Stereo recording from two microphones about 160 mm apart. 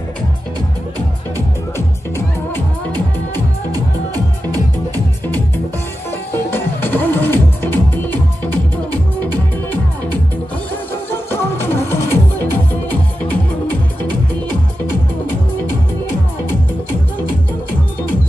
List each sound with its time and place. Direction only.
3.7 s music: 20° right (ahead or behind)
6.5 s music: 10° left (ahead or behind)
11.1 s music: 15° left (ahead or behind)